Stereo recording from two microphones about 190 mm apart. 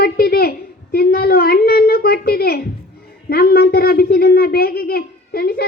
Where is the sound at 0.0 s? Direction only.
55° left (ahead or behind).